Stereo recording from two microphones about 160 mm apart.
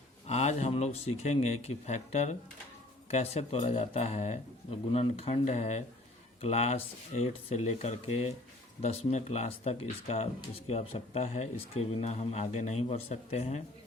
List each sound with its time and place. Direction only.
0.3 s speech: 45° left (ahead or behind)